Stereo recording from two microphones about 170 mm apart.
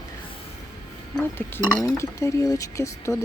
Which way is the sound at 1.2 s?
15° left (ahead or behind).